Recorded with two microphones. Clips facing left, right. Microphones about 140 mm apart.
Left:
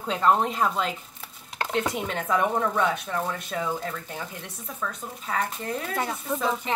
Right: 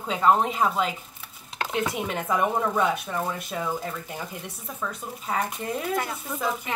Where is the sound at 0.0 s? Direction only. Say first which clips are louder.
Right 1 dB; 5° right (ahead or behind).